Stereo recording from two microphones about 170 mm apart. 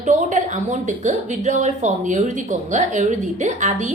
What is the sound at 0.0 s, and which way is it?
A woman's voice, 45° right (ahead or behind).